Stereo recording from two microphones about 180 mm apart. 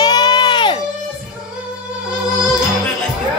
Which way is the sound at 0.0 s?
25° left (ahead or behind).